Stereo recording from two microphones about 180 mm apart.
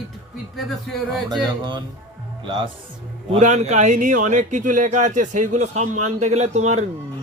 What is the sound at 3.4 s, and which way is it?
Speech, 40° right (ahead or behind).